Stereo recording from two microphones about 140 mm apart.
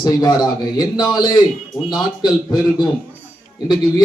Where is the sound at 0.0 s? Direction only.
30° left (ahead or behind).